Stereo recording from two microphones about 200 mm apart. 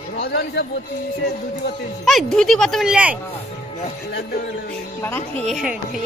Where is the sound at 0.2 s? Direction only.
55° left (ahead or behind).